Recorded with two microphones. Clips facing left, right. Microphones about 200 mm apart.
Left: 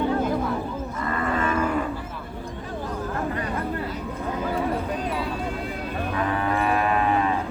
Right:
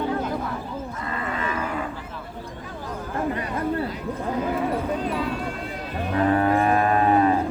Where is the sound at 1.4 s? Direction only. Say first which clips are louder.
Left 5 dB; 50° left (ahead or behind).